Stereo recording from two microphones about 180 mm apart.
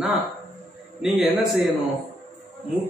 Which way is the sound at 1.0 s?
Centre (ahead or behind).